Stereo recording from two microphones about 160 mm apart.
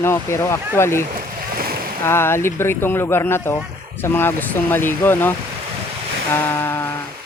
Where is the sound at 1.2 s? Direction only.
65° right (ahead or behind).